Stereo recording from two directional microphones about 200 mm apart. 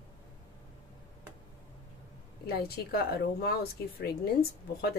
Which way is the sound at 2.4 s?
50° left (ahead or behind).